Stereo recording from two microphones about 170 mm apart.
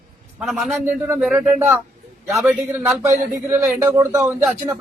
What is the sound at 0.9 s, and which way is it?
Speech, 15° right (ahead or behind).